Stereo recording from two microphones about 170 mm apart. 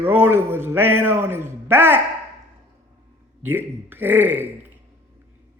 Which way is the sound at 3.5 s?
10° right (ahead or behind).